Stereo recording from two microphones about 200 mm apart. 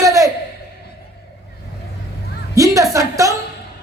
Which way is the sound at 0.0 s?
15° right (ahead or behind).